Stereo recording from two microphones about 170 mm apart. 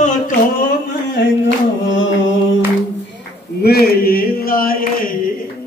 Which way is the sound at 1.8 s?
90° left.